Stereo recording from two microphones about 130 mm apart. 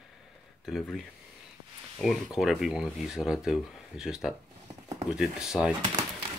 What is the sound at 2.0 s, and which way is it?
Speech, centre (ahead or behind).